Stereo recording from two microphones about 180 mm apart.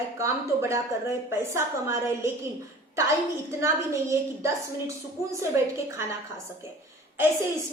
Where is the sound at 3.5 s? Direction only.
15° right (ahead or behind).